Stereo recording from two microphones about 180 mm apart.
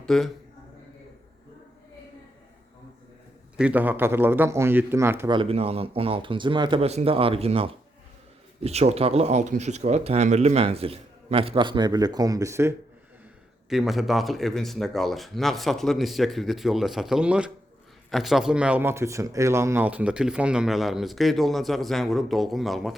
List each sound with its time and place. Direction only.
0.0 s a man's voice: centre (ahead or behind)
3.6 s speech: 10° right (ahead or behind)
5.3 s speech: 30° right (ahead or behind)
13.7 s speech: centre (ahead or behind)